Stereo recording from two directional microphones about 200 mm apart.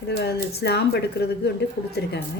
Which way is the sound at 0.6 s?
55° left (ahead or behind).